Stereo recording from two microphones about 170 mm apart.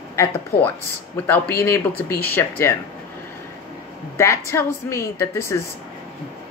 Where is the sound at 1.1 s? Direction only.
15° left (ahead or behind).